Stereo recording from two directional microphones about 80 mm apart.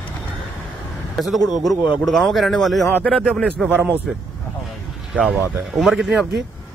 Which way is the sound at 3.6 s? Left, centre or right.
Right.